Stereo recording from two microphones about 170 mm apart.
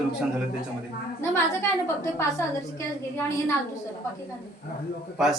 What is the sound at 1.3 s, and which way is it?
A woman's voice, 15° left (ahead or behind).